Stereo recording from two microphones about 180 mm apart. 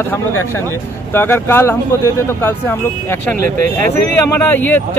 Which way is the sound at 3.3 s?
50° right (ahead or behind).